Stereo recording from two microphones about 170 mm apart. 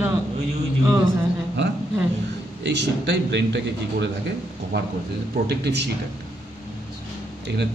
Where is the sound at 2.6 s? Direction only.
90° right.